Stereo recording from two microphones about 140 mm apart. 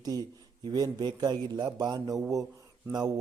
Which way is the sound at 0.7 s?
30° right (ahead or behind).